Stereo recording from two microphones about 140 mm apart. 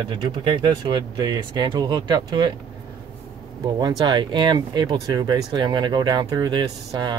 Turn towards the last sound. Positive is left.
turn(degrees=-30)  # may be behind; listen again after turning